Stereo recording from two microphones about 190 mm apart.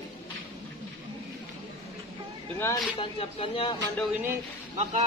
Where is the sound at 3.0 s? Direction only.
25° left (ahead or behind).